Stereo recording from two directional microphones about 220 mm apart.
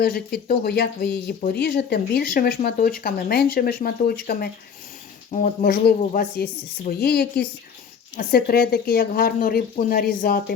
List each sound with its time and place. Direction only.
0.0 s a woman's voice: 45° left (ahead or behind)